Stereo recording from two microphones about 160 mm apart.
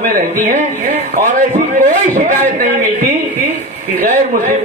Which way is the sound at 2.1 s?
50° right (ahead or behind).